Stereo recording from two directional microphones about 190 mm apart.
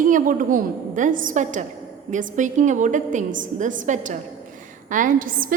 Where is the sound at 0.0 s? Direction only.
45° right (ahead or behind).